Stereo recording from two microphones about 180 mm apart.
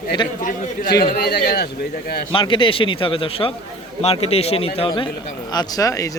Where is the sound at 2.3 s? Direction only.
30° left (ahead or behind).